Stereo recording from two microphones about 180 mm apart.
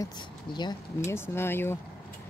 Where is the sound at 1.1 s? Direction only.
15° left (ahead or behind).